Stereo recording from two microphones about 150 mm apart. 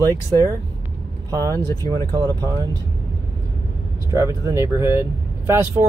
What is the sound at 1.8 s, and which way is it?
Speech, 25° right (ahead or behind).